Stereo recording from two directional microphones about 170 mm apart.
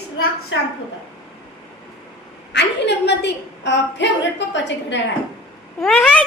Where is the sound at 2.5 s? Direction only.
90° left.